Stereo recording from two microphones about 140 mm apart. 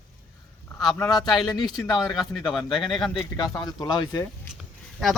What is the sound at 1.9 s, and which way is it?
Speech, 30° left (ahead or behind).